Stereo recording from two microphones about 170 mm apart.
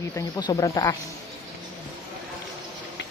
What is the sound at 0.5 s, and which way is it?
Speech, 20° left (ahead or behind).